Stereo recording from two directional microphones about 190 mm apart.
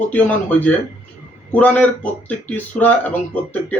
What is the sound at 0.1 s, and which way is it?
Speech, 10° left (ahead or behind).